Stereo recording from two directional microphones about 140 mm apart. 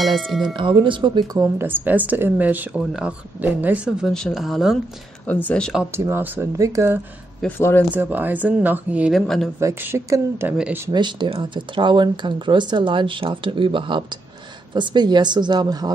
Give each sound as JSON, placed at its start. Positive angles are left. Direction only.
{"t": 0.5, "sound": "speech", "side_deg": -35}
{"t": 1.6, "sound": "speech", "side_deg": -15}
{"t": 4.1, "sound": "speech", "side_deg": 0}
{"t": 5.3, "sound": "speech", "side_deg": 10}
{"t": 5.9, "sound": "speech", "side_deg": -15}
{"t": 7.4, "sound": "speech", "side_deg": 15}
{"t": 7.9, "sound": "speech", "side_deg": -15}
{"t": 9.6, "sound": "speech", "side_deg": -20}
{"t": 10.9, "sound": "speech", "side_deg": -35}